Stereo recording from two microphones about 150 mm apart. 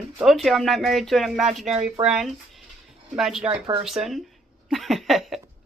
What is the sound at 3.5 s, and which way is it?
Speech, 30° right (ahead or behind).